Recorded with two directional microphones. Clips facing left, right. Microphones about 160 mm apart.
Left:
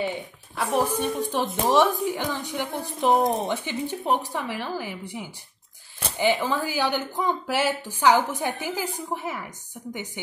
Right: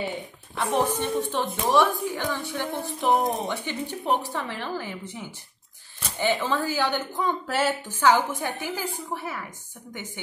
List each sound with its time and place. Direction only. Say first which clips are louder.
0.6 s speech: even; 10° left (ahead or behind)